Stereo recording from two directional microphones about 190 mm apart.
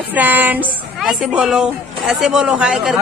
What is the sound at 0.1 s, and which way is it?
A woman's voice, 10° right (ahead or behind).